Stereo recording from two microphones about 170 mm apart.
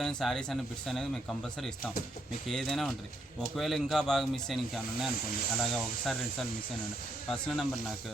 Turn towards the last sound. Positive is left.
turn(degrees=0)  # may be behind; listen again after turning